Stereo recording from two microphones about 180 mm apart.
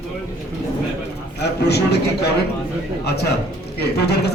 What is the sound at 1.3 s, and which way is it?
Speech, 65° left (ahead or behind).